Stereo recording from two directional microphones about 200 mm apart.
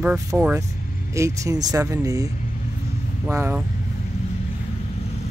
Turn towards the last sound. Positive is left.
turn(degrees=-10)  # may be behind; listen again after turning